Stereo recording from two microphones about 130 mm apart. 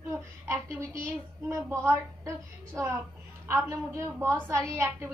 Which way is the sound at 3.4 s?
20° right (ahead or behind).